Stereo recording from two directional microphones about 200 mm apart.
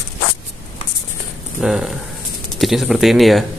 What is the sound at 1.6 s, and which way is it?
Speech, centre (ahead or behind).